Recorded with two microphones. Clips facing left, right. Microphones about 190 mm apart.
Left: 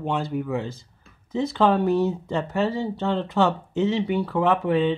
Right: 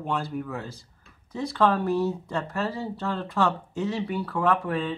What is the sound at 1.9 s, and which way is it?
Speech, 20° left (ahead or behind).